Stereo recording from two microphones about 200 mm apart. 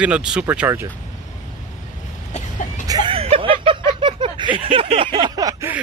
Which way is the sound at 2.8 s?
20° right (ahead or behind).